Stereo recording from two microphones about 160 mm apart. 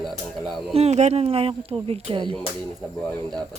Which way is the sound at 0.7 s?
40° right (ahead or behind).